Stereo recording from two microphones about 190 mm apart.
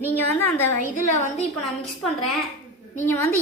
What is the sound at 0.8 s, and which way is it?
Speech, 40° left (ahead or behind).